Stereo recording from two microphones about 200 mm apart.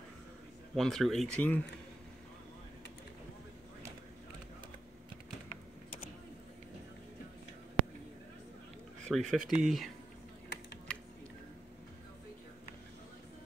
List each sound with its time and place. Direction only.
0.7 s speech: centre (ahead or behind)
9.0 s speech: centre (ahead or behind)
10.5 s typing: 60° left (ahead or behind)